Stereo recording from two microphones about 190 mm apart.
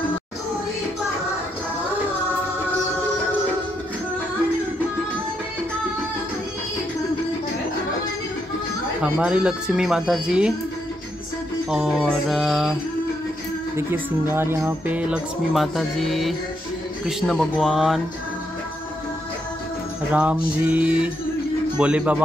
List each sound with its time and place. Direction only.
9.0 s speech: 5° right (ahead or behind)
11.7 s speech: centre (ahead or behind)
14.3 s speech: 15° right (ahead or behind)
20.1 s music: 5° right (ahead or behind)
21.7 s speech: 5° right (ahead or behind)